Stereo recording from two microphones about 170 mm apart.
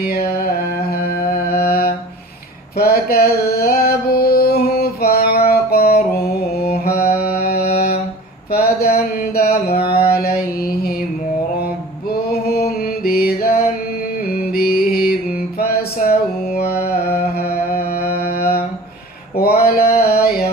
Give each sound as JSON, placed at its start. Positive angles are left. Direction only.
{"t": 0.0, "sound": "music", "side_deg": 65}
{"t": 2.7, "sound": "female singing", "side_deg": 65}
{"t": 8.5, "sound": "mantra", "side_deg": 65}
{"t": 12.1, "sound": "a sound", "side_deg": 70}
{"t": 13.1, "sound": "music", "side_deg": 65}
{"t": 18.3, "sound": "mantra", "side_deg": 65}
{"t": 19.5, "sound": "a sound", "side_deg": 65}